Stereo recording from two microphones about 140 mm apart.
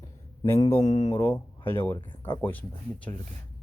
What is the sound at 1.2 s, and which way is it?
Speech, 15° left (ahead or behind).